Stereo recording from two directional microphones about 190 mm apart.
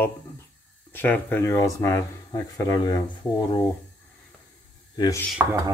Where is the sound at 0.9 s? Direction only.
10° left (ahead or behind).